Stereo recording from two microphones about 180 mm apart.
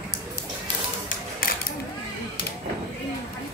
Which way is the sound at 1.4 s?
55° left (ahead or behind).